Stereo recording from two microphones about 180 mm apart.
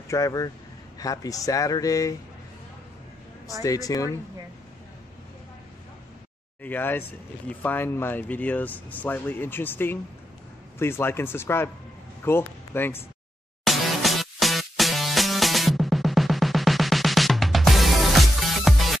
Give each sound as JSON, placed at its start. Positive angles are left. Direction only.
{"t": 0.1, "sound": "speech", "side_deg": 20}
{"t": 3.6, "sound": "speech", "side_deg": 20}
{"t": 6.6, "sound": "a man's voice", "side_deg": 10}
{"t": 13.7, "sound": "music", "side_deg": 0}